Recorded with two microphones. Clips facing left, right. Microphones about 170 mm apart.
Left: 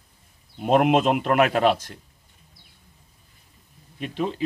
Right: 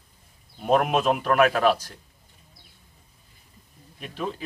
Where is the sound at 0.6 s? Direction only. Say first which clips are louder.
Left 3 dB; 20° left (ahead or behind).